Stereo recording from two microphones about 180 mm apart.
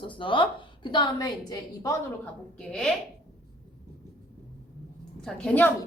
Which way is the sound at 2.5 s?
5° left (ahead or behind).